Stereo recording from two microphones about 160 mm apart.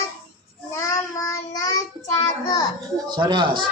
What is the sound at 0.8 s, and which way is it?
Child singing, 20° left (ahead or behind).